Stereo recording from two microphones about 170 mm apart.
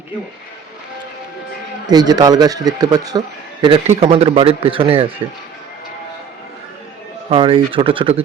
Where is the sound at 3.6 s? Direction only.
35° right (ahead or behind).